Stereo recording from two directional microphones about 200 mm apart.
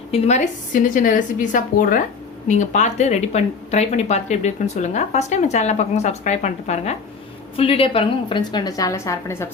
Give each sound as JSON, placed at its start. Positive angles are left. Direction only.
{"t": 0.1, "sound": "a woman's voice", "side_deg": 35}